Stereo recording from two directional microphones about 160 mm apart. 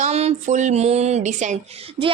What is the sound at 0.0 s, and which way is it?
A woman's voice, 40° right (ahead or behind).